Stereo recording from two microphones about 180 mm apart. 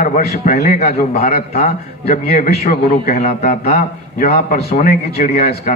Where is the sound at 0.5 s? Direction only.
40° left (ahead or behind).